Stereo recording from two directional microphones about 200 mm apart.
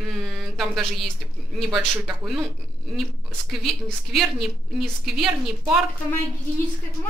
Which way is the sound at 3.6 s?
Centre (ahead or behind).